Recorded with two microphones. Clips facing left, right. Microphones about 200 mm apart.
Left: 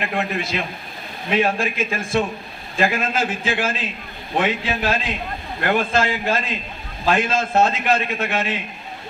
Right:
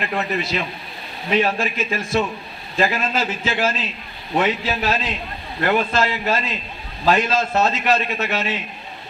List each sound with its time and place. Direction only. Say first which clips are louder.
0.0 s a man's voice: even; 50° left (ahead or behind)